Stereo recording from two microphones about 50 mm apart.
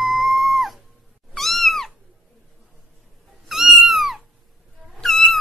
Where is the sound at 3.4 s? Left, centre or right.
Centre.